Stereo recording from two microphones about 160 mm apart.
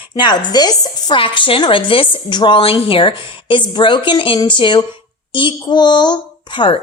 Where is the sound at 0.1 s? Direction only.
25° left (ahead or behind).